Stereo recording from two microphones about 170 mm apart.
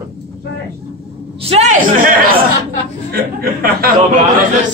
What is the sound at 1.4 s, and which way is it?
Speech, 40° right (ahead or behind).